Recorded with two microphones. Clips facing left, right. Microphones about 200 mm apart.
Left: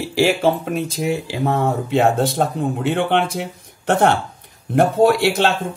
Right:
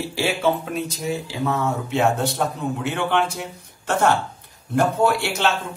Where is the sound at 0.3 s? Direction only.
50° left (ahead or behind).